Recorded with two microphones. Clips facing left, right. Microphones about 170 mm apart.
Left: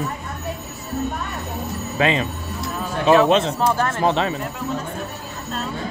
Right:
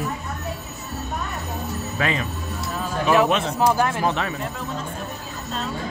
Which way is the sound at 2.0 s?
25° left (ahead or behind).